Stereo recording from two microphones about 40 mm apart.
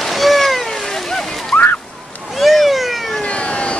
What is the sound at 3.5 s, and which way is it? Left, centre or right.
Vehicle, left.